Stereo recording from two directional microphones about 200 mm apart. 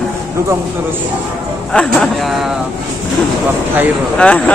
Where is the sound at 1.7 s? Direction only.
5° left (ahead or behind).